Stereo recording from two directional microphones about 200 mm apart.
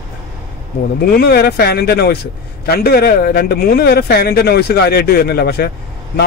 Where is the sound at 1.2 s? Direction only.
50° left (ahead or behind).